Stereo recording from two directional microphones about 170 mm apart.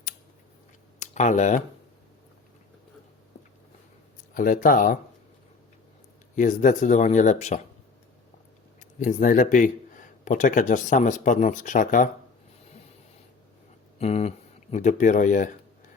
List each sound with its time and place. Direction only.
0.9 s speech: 45° left (ahead or behind)
4.4 s speech: 55° left (ahead or behind)
6.3 s speech: 50° left (ahead or behind)
8.8 s speech: 50° left (ahead or behind)
14.0 s speech: 40° left (ahead or behind)